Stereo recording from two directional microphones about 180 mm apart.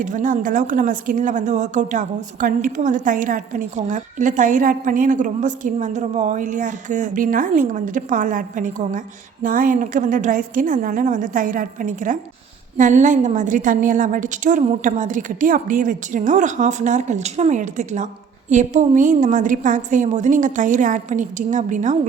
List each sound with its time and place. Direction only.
0.0 s a woman's voice: 45° right (ahead or behind)